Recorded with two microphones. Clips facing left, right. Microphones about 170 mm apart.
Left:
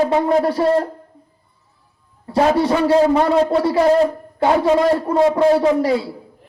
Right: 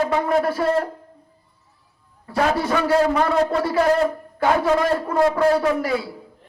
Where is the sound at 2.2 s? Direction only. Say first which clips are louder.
Left 5 dB; 30° left (ahead or behind).